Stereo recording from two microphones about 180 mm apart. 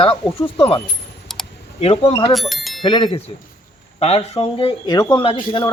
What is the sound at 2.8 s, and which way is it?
Speech, 30° left (ahead or behind).